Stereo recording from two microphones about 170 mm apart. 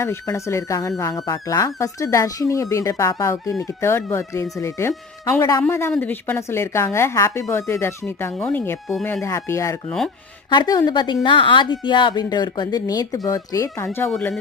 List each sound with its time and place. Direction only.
0.0 s a woman's voice: 15° left (ahead or behind)